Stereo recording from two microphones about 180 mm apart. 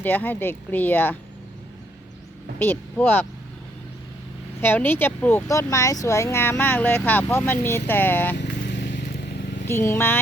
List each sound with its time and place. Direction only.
0.0 s speech: 10° left (ahead or behind)
2.6 s speech: 10° left (ahead or behind)
4.6 s speech: 10° left (ahead or behind)
8.4 s vehicle: 70° left (ahead or behind)
9.6 s speech: 15° left (ahead or behind)